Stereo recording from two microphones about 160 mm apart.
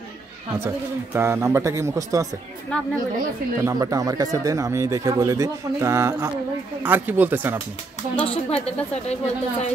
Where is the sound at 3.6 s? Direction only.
20° right (ahead or behind).